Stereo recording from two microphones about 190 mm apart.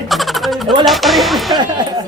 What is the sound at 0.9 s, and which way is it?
Speech, centre (ahead or behind).